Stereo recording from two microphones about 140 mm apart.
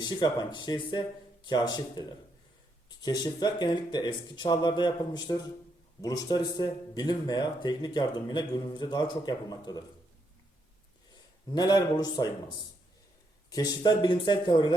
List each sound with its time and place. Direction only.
0.0 s speech: 30° left (ahead or behind)
11.5 s speech: 25° left (ahead or behind)
13.5 s speech: 30° left (ahead or behind)